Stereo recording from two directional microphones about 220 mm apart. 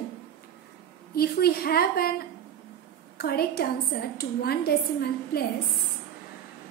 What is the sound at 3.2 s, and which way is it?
A woman's voice, 45° left (ahead or behind).